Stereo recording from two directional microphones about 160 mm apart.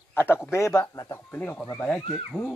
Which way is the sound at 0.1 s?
15° left (ahead or behind).